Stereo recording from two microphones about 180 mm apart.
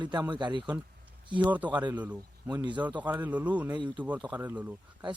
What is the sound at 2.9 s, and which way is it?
Speech, 10° right (ahead or behind).